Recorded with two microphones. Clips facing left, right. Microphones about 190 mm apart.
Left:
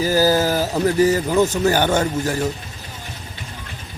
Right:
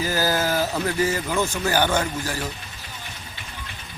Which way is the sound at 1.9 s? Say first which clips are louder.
Left 5 dB; 45° left (ahead or behind).